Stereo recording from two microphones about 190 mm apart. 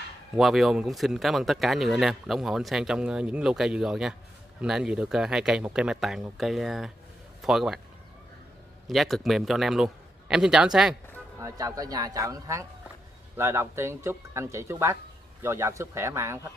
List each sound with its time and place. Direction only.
0.4 s speech: centre (ahead or behind)
8.8 s speech: centre (ahead or behind)
11.3 s speech: 15° right (ahead or behind)